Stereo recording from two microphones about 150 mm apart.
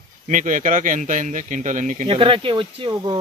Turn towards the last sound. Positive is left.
turn(degrees=-35)  # may be behind; listen again after turning